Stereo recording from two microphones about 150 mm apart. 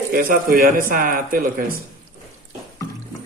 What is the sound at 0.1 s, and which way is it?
A man's voice, 75° right (ahead or behind).